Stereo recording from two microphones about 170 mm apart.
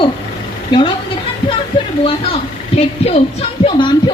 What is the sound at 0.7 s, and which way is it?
Speech, 30° left (ahead or behind).